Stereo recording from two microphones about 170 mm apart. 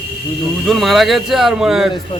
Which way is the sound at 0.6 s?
Centre (ahead or behind).